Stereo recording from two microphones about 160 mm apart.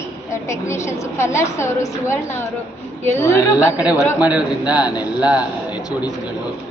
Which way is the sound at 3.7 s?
10° right (ahead or behind).